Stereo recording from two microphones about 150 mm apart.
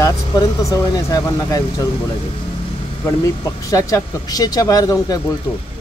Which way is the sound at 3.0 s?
25° left (ahead or behind).